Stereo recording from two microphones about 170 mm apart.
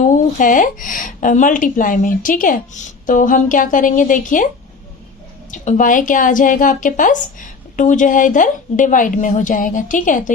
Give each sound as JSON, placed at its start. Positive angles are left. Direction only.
{"t": 0.0, "sound": "a woman's voice", "side_deg": 50}
{"t": 5.5, "sound": "a woman's voice", "side_deg": 50}